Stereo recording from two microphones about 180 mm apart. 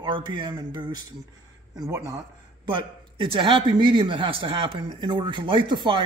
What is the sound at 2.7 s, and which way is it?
A man's voice, 30° right (ahead or behind).